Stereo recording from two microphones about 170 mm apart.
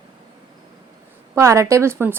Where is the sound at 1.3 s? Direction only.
15° right (ahead or behind).